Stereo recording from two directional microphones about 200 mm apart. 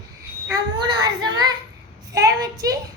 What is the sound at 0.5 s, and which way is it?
A child's voice, 20° right (ahead or behind).